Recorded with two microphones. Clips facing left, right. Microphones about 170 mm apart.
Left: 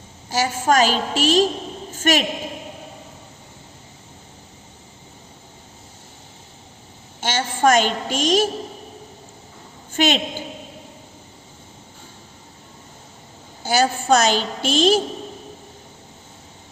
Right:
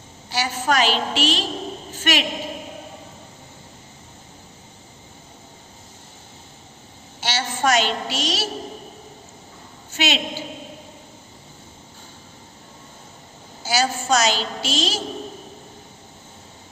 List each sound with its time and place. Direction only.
0.3 s a woman's voice: 45° left (ahead or behind)
1.9 s a sound: 45° left (ahead or behind)
7.2 s a woman's voice: 50° left (ahead or behind)
9.9 s a woman's voice: 50° left (ahead or behind)
13.6 s a woman's voice: 55° left (ahead or behind)